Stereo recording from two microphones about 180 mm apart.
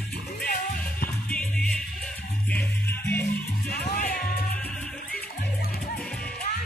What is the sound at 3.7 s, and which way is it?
Music, 55° left (ahead or behind).